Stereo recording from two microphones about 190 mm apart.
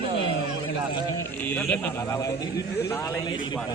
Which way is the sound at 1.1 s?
10° left (ahead or behind).